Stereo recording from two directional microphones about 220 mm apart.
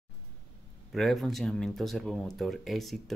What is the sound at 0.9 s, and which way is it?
Speech, centre (ahead or behind).